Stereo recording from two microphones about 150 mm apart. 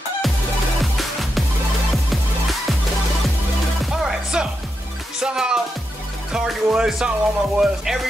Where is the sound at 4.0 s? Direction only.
5° right (ahead or behind).